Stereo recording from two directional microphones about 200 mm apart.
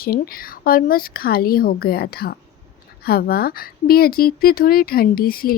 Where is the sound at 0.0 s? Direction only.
45° left (ahead or behind).